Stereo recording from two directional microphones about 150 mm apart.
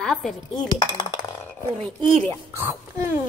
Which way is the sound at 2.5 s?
15° right (ahead or behind).